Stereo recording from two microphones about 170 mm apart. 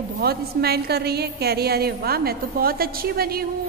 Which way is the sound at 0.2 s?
65° right (ahead or behind).